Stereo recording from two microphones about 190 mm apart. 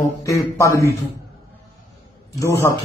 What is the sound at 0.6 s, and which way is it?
Speech, 15° left (ahead or behind).